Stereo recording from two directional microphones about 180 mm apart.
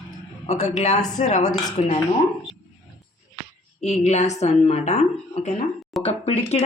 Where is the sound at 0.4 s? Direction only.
40° left (ahead or behind).